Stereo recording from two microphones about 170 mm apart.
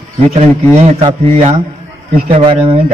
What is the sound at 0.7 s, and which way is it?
A man's voice, 40° right (ahead or behind).